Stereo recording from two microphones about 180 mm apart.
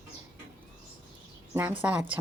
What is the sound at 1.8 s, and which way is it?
Speech, 5° right (ahead or behind).